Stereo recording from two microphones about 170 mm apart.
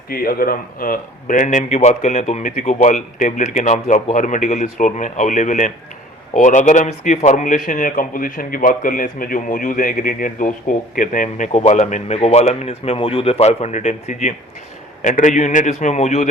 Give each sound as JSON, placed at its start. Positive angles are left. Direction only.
{"t": 0.1, "sound": "a man's voice", "side_deg": 60}